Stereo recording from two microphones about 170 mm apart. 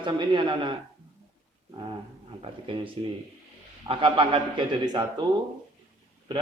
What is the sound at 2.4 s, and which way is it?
A man's voice, 30° right (ahead or behind).